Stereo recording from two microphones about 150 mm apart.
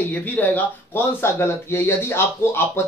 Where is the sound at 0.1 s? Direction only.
10° left (ahead or behind).